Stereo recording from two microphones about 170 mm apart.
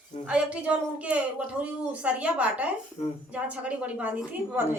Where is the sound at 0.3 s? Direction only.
5° right (ahead or behind).